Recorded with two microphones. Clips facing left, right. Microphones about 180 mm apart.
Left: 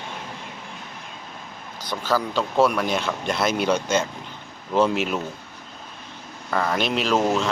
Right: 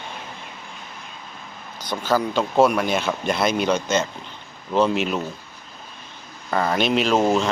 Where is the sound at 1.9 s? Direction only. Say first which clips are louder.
Right 2 dB; 15° right (ahead or behind).